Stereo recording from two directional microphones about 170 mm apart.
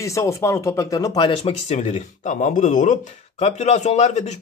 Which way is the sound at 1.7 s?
45° left (ahead or behind).